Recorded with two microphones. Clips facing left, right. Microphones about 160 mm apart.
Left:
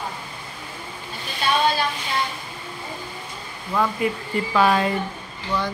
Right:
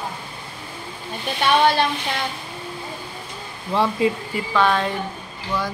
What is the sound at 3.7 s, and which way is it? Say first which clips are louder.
Speech: right 3 dB; 25° right (ahead or behind).